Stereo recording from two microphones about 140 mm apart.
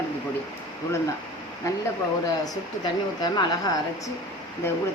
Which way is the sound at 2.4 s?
30° left (ahead or behind).